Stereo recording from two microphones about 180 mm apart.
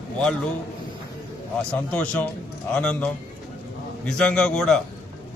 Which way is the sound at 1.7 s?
5° left (ahead or behind).